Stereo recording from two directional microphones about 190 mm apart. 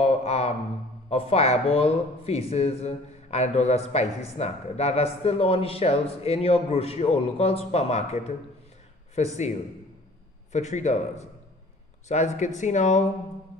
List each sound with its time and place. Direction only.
0.0 s a sound: 35° left (ahead or behind)
1.1 s speech: 35° left (ahead or behind)
10.5 s speech: 35° left (ahead or behind)